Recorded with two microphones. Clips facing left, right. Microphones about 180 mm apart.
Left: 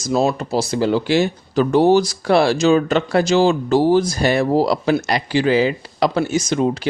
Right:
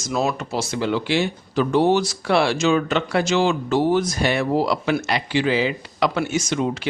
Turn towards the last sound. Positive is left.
turn(degrees=35)  # may be behind; listen again after turning